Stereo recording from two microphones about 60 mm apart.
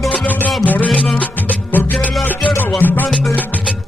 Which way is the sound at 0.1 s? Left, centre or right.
Left.